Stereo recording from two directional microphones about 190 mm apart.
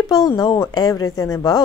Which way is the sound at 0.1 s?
20° left (ahead or behind).